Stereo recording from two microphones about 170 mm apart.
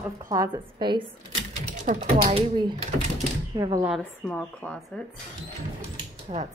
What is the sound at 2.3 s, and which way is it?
A woman's voice, 30° right (ahead or behind).